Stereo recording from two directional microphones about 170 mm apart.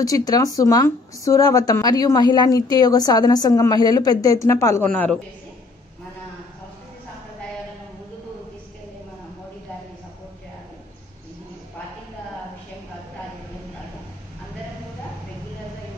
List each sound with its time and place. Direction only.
0.0 s speech: 20° left (ahead or behind)